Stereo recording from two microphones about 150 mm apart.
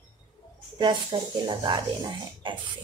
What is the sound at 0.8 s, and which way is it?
Speech, 30° right (ahead or behind).